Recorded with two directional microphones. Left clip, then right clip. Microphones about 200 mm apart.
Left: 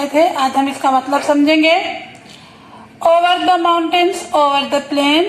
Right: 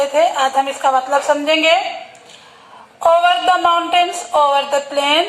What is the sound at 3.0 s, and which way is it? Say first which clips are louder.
A woman's voice: left 1 dB; 40° left (ahead or behind).